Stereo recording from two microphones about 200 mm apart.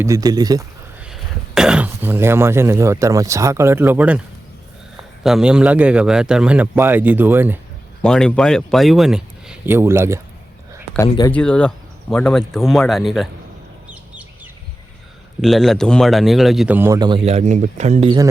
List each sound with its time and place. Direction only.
0.0 s speech: 15° right (ahead or behind)
1.0 s speech: 5° right (ahead or behind)
5.2 s speech: 5° right (ahead or behind)
8.0 s speech: 5° left (ahead or behind); by 10.2 s 15° right (ahead or behind)
10.9 s speech: 20° left (ahead or behind)
11.3 s speech: 5° left (ahead or behind)
13.9 s bird: 5° right (ahead or behind)
15.4 s speech: centre (ahead or behind); by 18.2 s 30° right (ahead or behind)